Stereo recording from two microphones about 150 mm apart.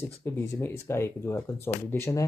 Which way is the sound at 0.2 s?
15° left (ahead or behind).